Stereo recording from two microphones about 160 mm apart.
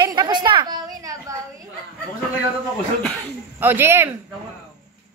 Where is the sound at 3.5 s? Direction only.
15° right (ahead or behind).